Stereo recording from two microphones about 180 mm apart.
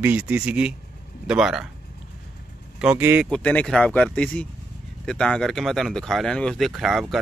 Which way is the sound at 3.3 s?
10° left (ahead or behind).